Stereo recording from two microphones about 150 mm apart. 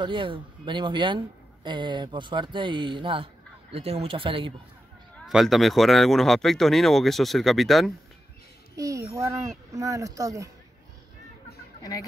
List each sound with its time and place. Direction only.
0.0 s speech: 35° right (ahead or behind)
5.2 s speech: centre (ahead or behind)
8.7 s a child's voice: 20° right (ahead or behind)